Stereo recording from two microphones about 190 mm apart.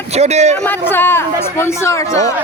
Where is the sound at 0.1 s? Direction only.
35° right (ahead or behind).